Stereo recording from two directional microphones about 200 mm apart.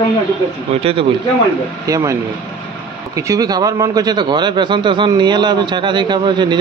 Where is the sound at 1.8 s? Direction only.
15° right (ahead or behind).